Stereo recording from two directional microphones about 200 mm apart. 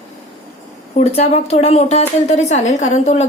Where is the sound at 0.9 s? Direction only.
35° left (ahead or behind).